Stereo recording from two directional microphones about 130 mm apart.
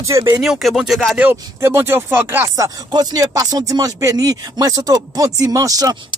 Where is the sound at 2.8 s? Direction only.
30° right (ahead or behind).